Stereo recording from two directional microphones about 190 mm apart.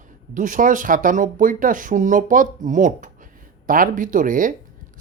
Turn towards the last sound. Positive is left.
turn(degrees=-45)  # may be behind; listen again after turning